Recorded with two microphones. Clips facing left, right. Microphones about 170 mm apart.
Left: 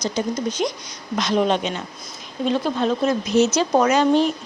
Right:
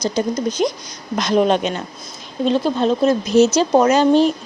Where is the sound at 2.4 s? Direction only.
30° right (ahead or behind).